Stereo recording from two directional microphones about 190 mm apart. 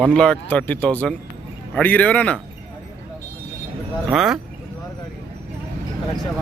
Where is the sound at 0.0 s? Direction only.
5° left (ahead or behind).